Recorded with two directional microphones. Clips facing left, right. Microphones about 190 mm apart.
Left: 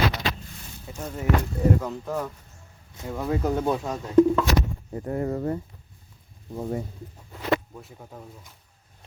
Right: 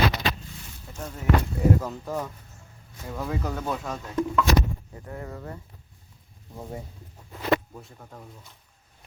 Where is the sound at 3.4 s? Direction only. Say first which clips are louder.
Left 6 dB; 20° left (ahead or behind).